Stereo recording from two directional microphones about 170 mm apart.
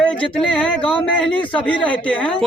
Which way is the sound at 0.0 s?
5° left (ahead or behind).